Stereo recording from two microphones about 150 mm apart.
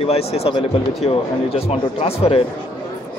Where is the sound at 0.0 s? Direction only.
40° left (ahead or behind).